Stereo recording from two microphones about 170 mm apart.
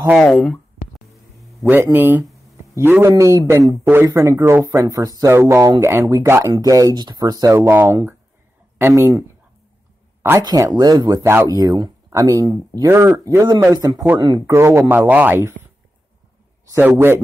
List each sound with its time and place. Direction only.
0.2 s speech: centre (ahead or behind)
1.6 s speech: 15° right (ahead or behind)
10.4 s speech: 20° right (ahead or behind)
16.7 s speech: 10° right (ahead or behind)